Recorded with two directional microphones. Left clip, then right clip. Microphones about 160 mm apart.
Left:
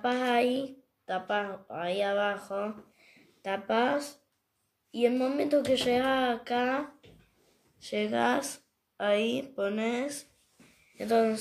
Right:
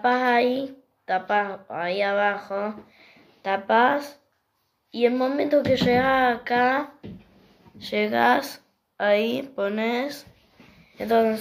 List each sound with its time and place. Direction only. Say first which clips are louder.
0.0 s a woman's voice: right 7 dB; 10° left (ahead or behind)